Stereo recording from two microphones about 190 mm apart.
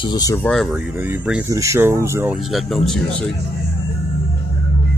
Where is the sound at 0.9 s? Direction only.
10° right (ahead or behind).